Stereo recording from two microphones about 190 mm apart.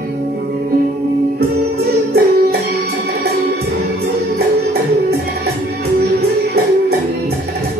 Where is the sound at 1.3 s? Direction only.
55° right (ahead or behind).